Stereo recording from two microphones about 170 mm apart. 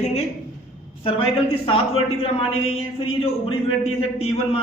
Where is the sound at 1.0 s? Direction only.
35° left (ahead or behind).